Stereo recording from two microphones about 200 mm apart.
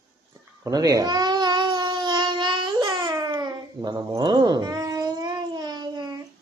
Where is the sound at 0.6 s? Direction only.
20° right (ahead or behind).